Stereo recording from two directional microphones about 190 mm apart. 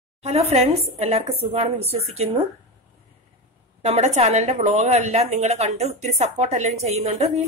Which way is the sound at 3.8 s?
35° right (ahead or behind).